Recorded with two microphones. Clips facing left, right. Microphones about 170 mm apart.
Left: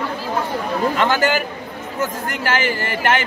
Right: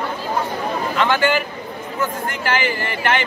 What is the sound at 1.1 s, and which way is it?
A man's voice, 40° left (ahead or behind).